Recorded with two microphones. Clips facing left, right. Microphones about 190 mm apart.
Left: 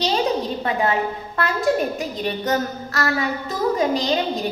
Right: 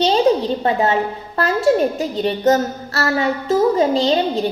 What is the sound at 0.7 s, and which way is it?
A woman's voice, 35° right (ahead or behind).